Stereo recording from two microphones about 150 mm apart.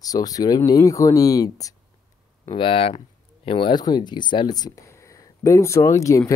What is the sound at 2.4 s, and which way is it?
Speech, 35° left (ahead or behind).